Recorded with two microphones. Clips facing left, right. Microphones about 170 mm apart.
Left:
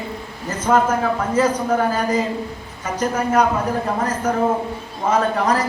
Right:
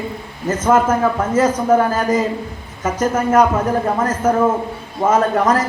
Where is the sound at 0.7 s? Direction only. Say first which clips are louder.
Right 2 dB; 45° right (ahead or behind).